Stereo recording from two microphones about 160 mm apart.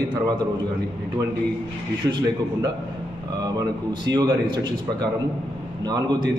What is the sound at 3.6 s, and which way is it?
Speech, 25° right (ahead or behind).